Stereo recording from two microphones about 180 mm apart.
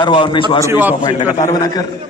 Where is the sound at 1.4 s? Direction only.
20° left (ahead or behind).